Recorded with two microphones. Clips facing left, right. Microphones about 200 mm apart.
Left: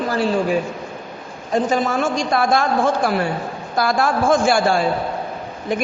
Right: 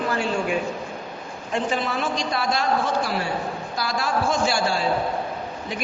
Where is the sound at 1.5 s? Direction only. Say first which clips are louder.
Left 6 dB; 40° left (ahead or behind).